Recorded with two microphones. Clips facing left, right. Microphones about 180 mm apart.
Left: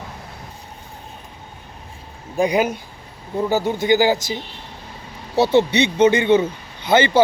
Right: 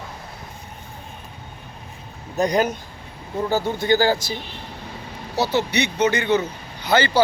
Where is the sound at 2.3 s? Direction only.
10° left (ahead or behind).